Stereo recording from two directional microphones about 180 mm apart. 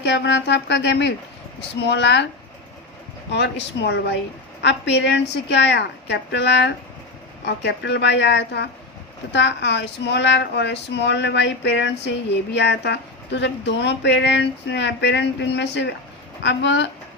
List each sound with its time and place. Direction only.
0.0 s speech: 75° left (ahead or behind)
3.3 s speech: 75° left (ahead or behind)